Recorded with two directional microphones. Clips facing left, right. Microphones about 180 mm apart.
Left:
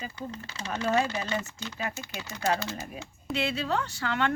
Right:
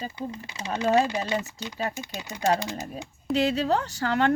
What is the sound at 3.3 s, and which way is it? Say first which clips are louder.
Speech: right 6 dB; 40° right (ahead or behind).